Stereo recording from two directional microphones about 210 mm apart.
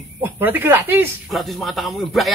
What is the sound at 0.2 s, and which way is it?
Speech, 10° right (ahead or behind).